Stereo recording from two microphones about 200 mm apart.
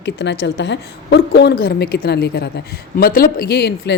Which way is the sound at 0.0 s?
60° left (ahead or behind).